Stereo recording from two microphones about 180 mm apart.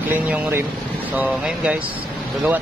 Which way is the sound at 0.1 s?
10° right (ahead or behind).